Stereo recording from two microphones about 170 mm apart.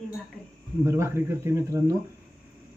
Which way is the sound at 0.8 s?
15° right (ahead or behind).